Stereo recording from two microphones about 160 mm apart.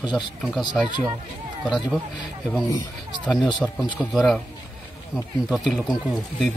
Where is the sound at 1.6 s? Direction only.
Centre (ahead or behind).